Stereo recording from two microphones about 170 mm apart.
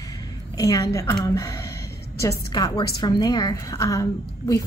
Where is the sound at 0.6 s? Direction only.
20° left (ahead or behind).